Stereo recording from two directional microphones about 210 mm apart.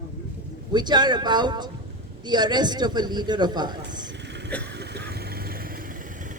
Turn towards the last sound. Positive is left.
turn(degrees=-45)  # may be behind; listen again after turning